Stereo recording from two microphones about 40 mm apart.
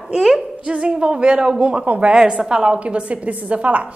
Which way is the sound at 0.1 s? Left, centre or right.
Centre.